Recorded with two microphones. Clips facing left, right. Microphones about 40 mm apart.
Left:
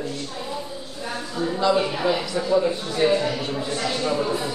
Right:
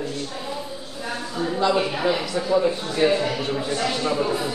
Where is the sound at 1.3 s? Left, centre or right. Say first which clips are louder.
Even; centre.